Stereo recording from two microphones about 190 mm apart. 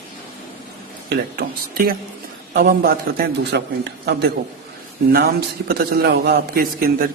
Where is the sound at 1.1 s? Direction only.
50° right (ahead or behind).